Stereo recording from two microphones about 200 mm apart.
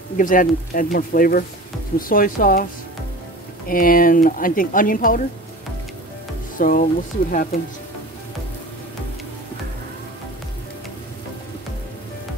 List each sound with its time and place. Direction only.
0.2 s speech: 40° left (ahead or behind)
6.6 s speech: 40° left (ahead or behind)